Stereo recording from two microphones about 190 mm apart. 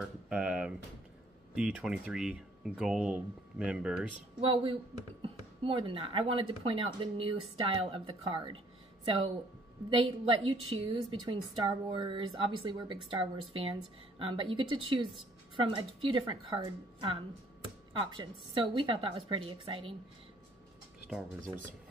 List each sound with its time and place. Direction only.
0.0 s speech: 5° right (ahead or behind)
4.4 s a woman's voice: 30° right (ahead or behind)